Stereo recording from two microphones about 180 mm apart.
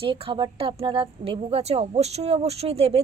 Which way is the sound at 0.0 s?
30° right (ahead or behind).